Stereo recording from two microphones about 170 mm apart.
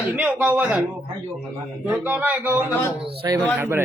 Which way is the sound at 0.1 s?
10° right (ahead or behind).